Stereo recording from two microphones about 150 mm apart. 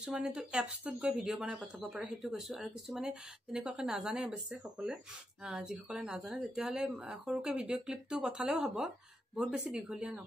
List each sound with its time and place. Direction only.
0.0 s speech: 5° right (ahead or behind)